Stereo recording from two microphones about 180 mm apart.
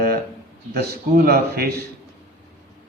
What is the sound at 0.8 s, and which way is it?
A man's voice, 55° right (ahead or behind).